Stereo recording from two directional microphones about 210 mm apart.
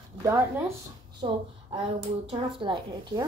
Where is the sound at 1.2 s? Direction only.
25° right (ahead or behind).